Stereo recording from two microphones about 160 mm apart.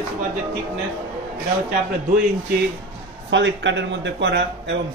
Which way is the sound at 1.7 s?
65° right (ahead or behind).